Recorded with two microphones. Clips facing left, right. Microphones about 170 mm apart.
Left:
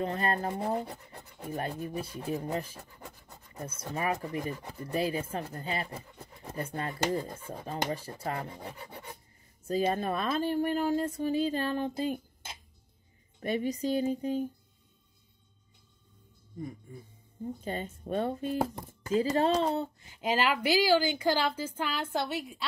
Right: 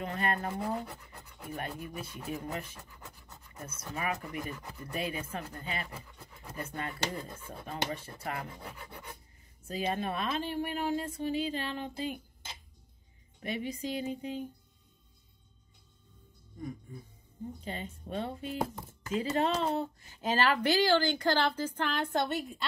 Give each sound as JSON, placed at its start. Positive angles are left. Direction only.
{"t": 0.0, "sound": "speech", "side_deg": 35}
{"t": 13.4, "sound": "speech", "side_deg": 40}
{"t": 17.6, "sound": "speech", "side_deg": 45}
{"t": 20.2, "sound": "a woman's voice", "side_deg": 10}